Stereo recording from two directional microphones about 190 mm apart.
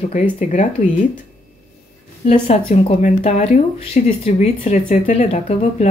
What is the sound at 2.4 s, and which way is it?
Speech, 35° left (ahead or behind).